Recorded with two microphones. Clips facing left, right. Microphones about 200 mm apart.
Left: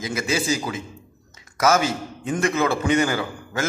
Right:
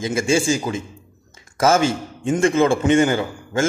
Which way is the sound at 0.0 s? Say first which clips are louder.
Right 6 dB; 25° right (ahead or behind).